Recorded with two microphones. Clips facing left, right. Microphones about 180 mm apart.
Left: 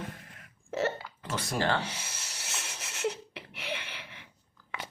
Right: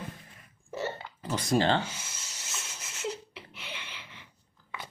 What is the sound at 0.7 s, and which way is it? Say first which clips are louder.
Hiccup: left 4 dB; 90° left.